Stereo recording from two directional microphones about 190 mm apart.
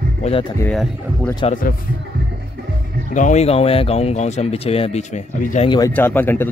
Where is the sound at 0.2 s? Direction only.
30° left (ahead or behind).